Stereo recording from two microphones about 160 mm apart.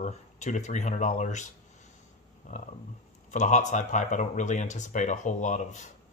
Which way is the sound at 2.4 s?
50° left (ahead or behind).